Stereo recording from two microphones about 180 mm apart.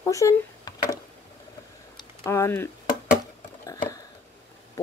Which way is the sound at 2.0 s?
15° left (ahead or behind).